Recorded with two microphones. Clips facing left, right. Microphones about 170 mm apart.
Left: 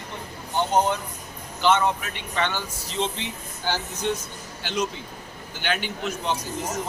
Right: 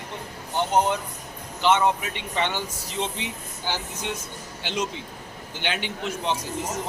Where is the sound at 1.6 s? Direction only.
20° right (ahead or behind).